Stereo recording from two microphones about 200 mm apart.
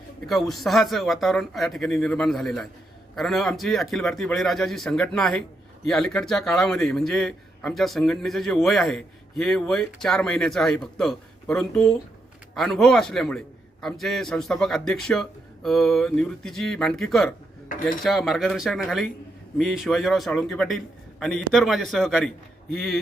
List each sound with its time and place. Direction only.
0.3 s a man's voice: centre (ahead or behind)
17.7 s speech: 40° left (ahead or behind)
18.0 s a man's voice: centre (ahead or behind)